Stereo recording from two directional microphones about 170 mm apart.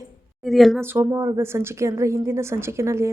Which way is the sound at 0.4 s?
Centre (ahead or behind).